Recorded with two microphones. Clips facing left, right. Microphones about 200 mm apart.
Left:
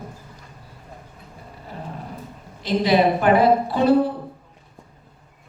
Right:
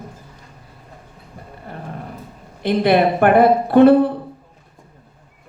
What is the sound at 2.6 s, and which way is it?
A man's voice, 60° right (ahead or behind).